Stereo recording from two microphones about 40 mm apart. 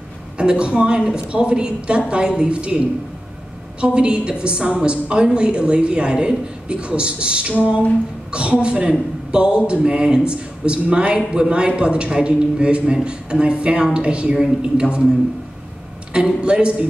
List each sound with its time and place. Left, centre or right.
0.4 s speech: right
3.8 s speech: right
7.5 s a sound: right
8.3 s speech: right
16.1 s speech: right